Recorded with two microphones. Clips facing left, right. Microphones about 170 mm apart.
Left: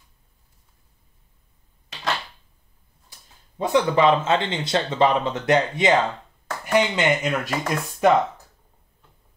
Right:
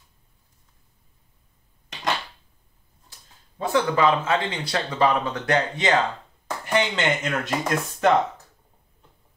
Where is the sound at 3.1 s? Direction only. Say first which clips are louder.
Left 1 dB; 20° left (ahead or behind).